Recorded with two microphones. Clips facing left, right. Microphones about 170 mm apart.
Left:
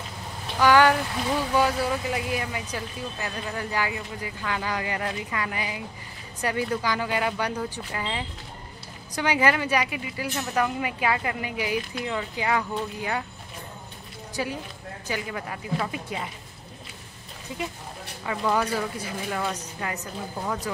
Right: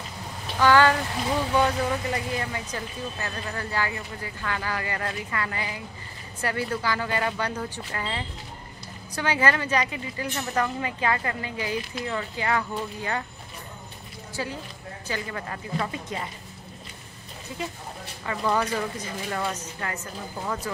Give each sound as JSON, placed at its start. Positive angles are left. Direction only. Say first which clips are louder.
{"t": 0.6, "sound": "speech", "louder": "left 1 dB", "side_deg": 15}
{"t": 14.3, "sound": "speech", "louder": "left 2 dB", "side_deg": 15}
{"t": 17.5, "sound": "speech", "louder": "left 1 dB", "side_deg": 15}
{"t": 18.2, "sound": "speech", "louder": "even", "side_deg": 5}